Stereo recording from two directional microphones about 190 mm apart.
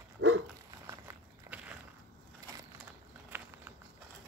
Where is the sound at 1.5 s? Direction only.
10° right (ahead or behind).